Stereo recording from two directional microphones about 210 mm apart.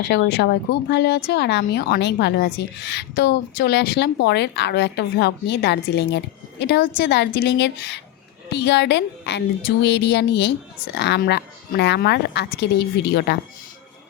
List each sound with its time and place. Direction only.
0.0 s a woman's voice: 55° left (ahead or behind)